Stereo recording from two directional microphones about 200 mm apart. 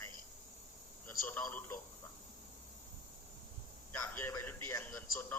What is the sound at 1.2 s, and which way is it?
Speech, 10° left (ahead or behind).